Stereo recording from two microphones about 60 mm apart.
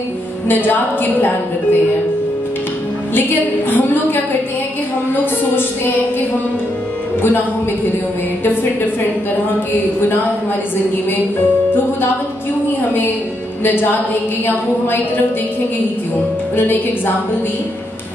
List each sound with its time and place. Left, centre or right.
0.5 s a woman's voice: left
3.2 s a woman's voice: left
13.7 s a woman's voice: left
16.5 s a woman's voice: left